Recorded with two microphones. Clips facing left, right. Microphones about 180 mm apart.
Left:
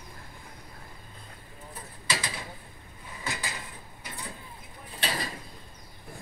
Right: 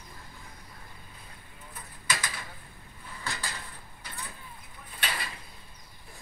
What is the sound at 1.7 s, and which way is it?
Mechanisms, 30° left (ahead or behind).